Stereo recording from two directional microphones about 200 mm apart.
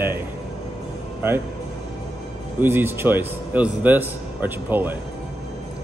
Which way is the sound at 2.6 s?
10° right (ahead or behind).